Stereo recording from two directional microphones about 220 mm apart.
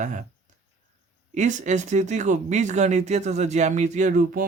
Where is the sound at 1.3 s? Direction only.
35° right (ahead or behind).